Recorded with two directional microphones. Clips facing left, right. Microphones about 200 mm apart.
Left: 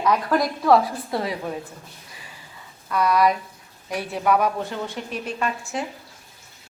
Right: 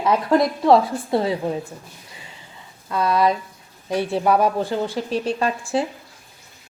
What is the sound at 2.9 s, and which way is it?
A woman's voice, 25° right (ahead or behind).